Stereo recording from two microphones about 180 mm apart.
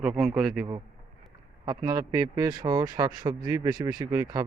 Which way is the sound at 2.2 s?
20° right (ahead or behind).